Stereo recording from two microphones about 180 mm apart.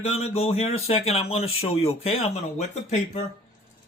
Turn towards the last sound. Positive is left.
turn(degrees=35)  # may be behind; listen again after turning